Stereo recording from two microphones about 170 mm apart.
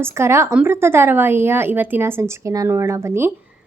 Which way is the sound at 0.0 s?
15° right (ahead or behind).